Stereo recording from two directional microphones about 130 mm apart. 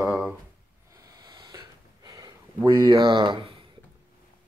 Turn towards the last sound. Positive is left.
turn(degrees=-35)  # may be behind; listen again after turning